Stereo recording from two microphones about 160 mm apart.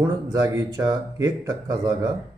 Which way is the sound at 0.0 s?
20° right (ahead or behind).